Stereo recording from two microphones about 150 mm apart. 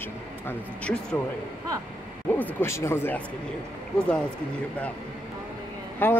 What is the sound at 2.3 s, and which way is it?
Speech, 15° left (ahead or behind).